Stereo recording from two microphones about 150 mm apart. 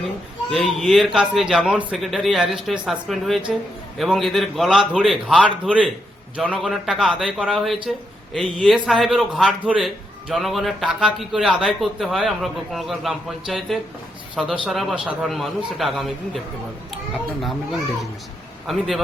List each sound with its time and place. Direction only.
0.5 s speech: centre (ahead or behind)
18.6 s speech: centre (ahead or behind)